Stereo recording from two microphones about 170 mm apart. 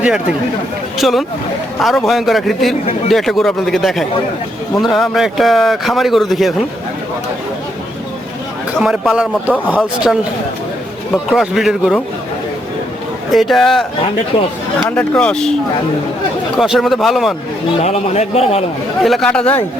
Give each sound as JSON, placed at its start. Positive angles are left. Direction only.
{"t": 0.9, "sound": "a man's voice", "side_deg": 0}
{"t": 8.8, "sound": "a man's voice", "side_deg": -5}
{"t": 13.3, "sound": "a man's voice", "side_deg": 0}
{"t": 14.8, "sound": "a man's voice", "side_deg": 5}
{"t": 16.6, "sound": "a man's voice", "side_deg": 0}
{"t": 17.8, "sound": "a man's voice", "side_deg": 40}
{"t": 19.0, "sound": "a man's voice", "side_deg": 0}